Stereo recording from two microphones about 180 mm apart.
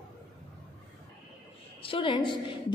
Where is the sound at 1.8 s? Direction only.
30° left (ahead or behind).